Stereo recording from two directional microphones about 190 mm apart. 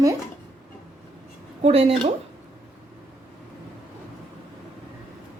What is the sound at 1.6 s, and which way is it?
Speech, 30° right (ahead or behind).